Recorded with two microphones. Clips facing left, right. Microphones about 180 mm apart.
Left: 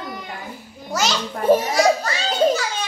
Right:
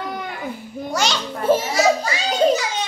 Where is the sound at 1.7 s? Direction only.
5° right (ahead or behind).